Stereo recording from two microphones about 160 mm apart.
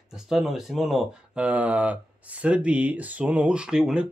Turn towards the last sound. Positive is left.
turn(degrees=-5)  # may be behind; listen again after turning